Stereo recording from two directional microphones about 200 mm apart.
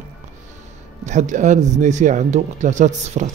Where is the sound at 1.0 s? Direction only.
35° right (ahead or behind).